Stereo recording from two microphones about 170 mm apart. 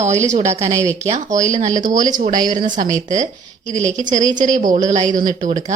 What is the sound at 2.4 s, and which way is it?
Speech, 25° right (ahead or behind).